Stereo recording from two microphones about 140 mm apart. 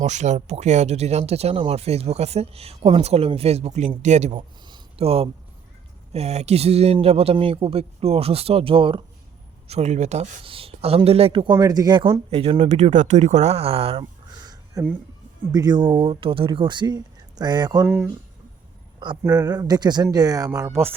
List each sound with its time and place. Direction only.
0.0 s speech: 55° right (ahead or behind)
4.6 s a sound: 40° right (ahead or behind)
6.1 s speech: 50° right (ahead or behind)
9.6 s speech: 50° right (ahead or behind)
11.5 s speech: 25° right (ahead or behind); by 14.0 s 45° right (ahead or behind)
14.4 s a sound: 30° right (ahead or behind)
15.5 s speech: 30° right (ahead or behind)
17.8 s speech: 15° right (ahead or behind)
19.2 s speech: 25° right (ahead or behind)